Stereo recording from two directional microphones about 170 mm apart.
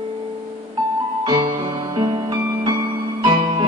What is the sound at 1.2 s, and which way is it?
Music, 30° right (ahead or behind).